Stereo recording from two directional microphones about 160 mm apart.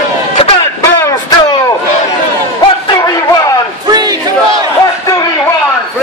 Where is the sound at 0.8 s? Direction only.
15° left (ahead or behind).